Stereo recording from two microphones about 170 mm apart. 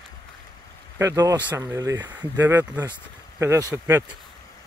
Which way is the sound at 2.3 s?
10° right (ahead or behind).